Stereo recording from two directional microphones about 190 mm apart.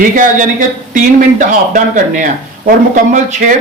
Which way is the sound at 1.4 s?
40° right (ahead or behind).